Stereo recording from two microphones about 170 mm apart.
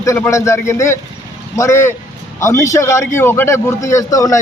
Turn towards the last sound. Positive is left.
turn(degrees=20)  # may be behind; listen again after turning